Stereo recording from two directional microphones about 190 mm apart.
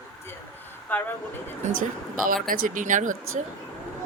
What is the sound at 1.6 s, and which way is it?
Speech, 45° right (ahead or behind).